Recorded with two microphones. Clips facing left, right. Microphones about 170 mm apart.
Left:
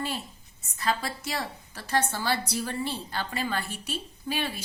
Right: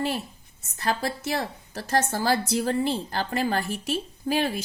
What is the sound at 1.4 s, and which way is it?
A woman's voice, 40° right (ahead or behind).